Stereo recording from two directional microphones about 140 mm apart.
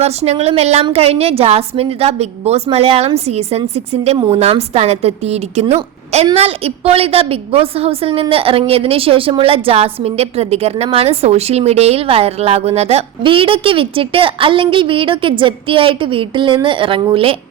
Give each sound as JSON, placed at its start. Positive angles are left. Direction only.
{"t": 0.0, "sound": "a woman's voice", "side_deg": -50}